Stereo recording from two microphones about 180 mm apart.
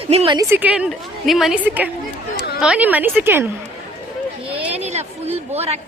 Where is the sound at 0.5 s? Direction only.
5° right (ahead or behind).